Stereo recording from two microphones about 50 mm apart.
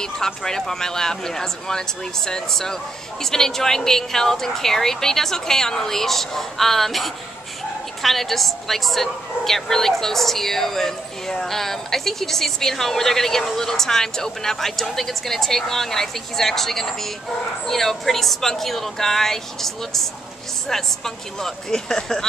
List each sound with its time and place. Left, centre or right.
0.0 s a woman's voice: centre